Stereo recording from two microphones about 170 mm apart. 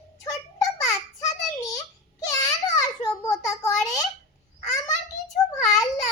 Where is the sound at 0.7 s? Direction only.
20° left (ahead or behind).